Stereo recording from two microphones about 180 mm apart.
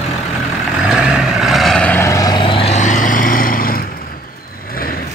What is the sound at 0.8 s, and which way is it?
Vehicle, 5° right (ahead or behind).